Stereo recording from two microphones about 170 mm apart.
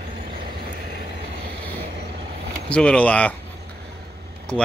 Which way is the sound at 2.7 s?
5° left (ahead or behind).